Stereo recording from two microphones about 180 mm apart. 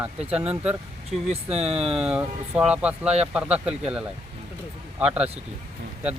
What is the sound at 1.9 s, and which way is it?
Speech, 5° right (ahead or behind).